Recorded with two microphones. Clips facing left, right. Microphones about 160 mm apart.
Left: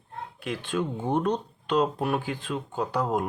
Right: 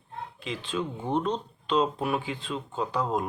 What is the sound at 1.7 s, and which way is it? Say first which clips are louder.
Speech: left 1 dB; 55° left (ahead or behind).